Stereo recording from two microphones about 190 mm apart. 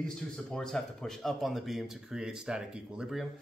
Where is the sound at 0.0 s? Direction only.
5° left (ahead or behind).